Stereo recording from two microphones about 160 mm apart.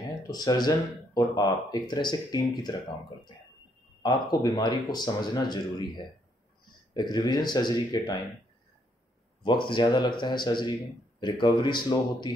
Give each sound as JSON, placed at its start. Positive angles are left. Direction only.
{"t": 0.3, "sound": "speech", "side_deg": 25}
{"t": 4.0, "sound": "speech", "side_deg": 25}
{"t": 6.9, "sound": "speech", "side_deg": 25}
{"t": 9.4, "sound": "speech", "side_deg": 30}